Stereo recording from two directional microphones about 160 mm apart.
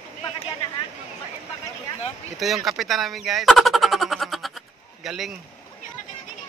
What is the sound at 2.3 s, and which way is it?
Speech, centre (ahead or behind).